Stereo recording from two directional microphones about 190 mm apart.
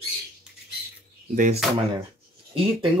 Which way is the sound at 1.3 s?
40° right (ahead or behind).